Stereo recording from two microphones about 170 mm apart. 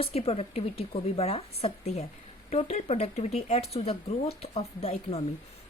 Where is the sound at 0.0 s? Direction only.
35° left (ahead or behind).